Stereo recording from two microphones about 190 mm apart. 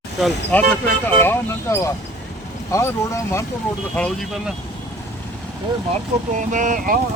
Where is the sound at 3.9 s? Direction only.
5° left (ahead or behind).